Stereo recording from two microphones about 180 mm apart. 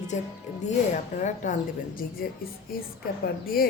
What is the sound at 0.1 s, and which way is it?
Speech, 40° left (ahead or behind).